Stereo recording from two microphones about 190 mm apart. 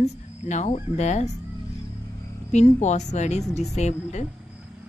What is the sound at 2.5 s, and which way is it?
Chicken, 35° left (ahead or behind).